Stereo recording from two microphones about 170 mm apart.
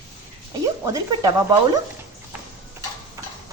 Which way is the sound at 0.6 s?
20° right (ahead or behind).